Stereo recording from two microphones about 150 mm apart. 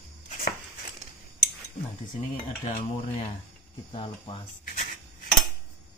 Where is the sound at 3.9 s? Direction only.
35° left (ahead or behind).